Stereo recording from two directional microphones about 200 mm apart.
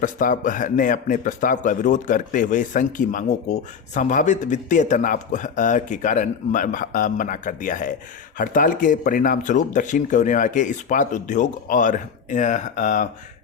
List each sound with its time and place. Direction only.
0.0 s a man's voice: 40° left (ahead or behind)